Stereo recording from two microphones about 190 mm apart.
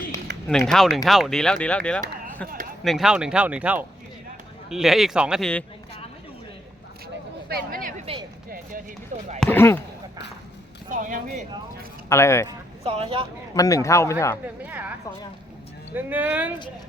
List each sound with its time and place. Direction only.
0.4 s a man's voice: centre (ahead or behind)
7.4 s a sound: 50° right (ahead or behind); by 8.2 s 35° right (ahead or behind)
8.4 s music: 50° right (ahead or behind)
9.4 s speech: 10° left (ahead or behind)
10.8 s a sound: 45° right (ahead or behind)
12.0 s a man's voice: 15° left (ahead or behind)
12.5 s speech: 30° right (ahead or behind)
13.5 s a man's voice: 20° left (ahead or behind)
14.4 s a sound: 10° right (ahead or behind)
16.0 s speech: 10° right (ahead or behind)